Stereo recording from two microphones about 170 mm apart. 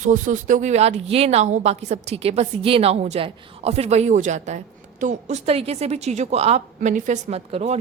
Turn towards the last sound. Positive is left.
turn(degrees=-35)  # may be behind; listen again after turning